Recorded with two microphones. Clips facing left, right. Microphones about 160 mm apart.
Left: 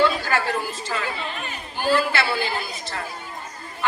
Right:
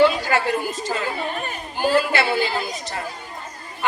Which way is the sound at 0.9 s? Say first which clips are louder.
Right 3 dB; 45° right (ahead or behind).